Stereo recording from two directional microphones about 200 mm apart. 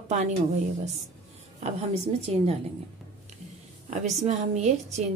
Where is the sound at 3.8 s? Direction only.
35° right (ahead or behind).